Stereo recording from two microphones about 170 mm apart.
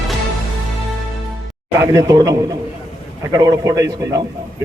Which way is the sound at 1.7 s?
20° right (ahead or behind).